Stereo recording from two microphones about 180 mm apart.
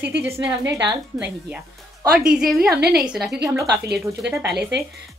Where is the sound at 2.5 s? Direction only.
60° right (ahead or behind).